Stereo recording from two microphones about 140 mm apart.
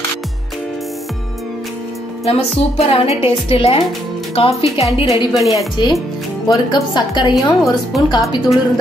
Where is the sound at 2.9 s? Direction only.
45° left (ahead or behind).